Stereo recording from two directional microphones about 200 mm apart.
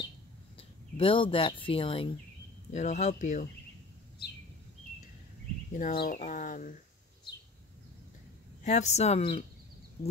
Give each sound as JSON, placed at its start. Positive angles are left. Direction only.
{"t": 0.6, "sound": "speech", "side_deg": 30}
{"t": 5.7, "sound": "speech", "side_deg": 45}
{"t": 8.6, "sound": "speech", "side_deg": 35}